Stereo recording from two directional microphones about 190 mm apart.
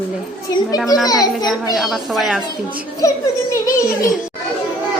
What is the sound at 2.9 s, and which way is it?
A child's voice, 15° left (ahead or behind).